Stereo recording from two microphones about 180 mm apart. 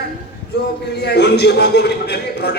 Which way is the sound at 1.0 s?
65° left (ahead or behind).